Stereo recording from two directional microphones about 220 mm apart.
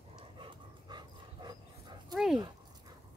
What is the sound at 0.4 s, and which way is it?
Dog, 20° right (ahead or behind).